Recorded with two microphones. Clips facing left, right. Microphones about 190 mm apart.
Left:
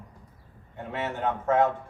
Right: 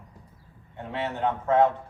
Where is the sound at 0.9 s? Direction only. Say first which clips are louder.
Right 1 dB; 45° left (ahead or behind).